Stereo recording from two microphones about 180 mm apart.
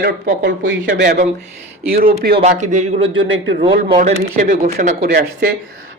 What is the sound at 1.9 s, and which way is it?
Speech, 55° right (ahead or behind).